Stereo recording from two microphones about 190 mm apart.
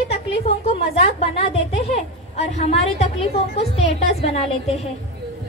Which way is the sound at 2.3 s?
35° left (ahead or behind).